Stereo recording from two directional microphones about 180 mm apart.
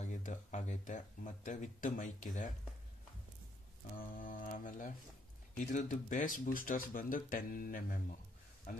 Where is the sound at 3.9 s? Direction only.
50° left (ahead or behind).